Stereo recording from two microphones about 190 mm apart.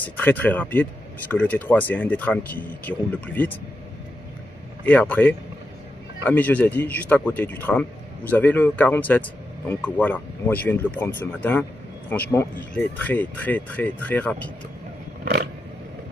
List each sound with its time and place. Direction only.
0.0 s speech: 10° left (ahead or behind)
4.8 s speech: 10° left (ahead or behind)